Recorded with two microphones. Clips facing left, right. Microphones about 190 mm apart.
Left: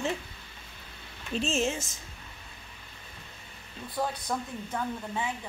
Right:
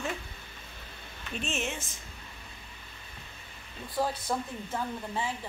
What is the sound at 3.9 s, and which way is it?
Speech, centre (ahead or behind).